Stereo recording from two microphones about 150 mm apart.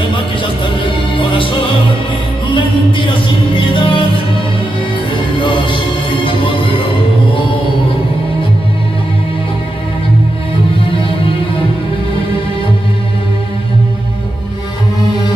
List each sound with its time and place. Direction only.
3.7 s music: 35° left (ahead or behind)